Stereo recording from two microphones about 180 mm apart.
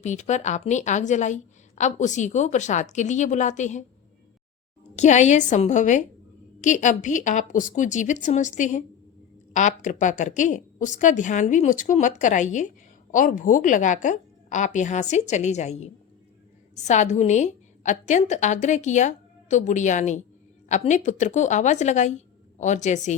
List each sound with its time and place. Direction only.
0.0 s a woman's voice: 40° left (ahead or behind)
4.9 s a woman's voice: 40° left (ahead or behind)